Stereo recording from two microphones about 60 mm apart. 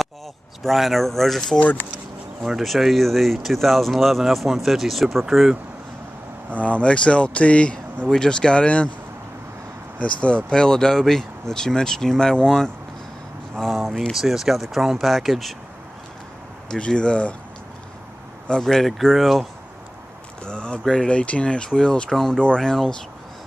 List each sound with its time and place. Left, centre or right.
0.7 s speech: centre
6.5 s speech: left
9.9 s speech: left
13.6 s a sound: centre
14.1 s speech: centre
16.7 s speech: centre
18.5 s speech: centre
20.4 s speech: centre